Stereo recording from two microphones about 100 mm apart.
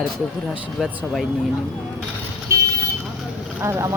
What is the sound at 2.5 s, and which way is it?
Vehicle, 30° right (ahead or behind).